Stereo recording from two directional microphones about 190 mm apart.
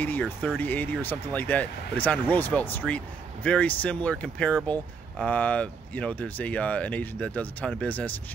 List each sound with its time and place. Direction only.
0.0 s speech: 10° left (ahead or behind)